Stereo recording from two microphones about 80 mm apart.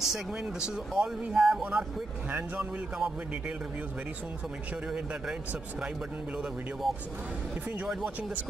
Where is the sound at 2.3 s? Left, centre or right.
Centre.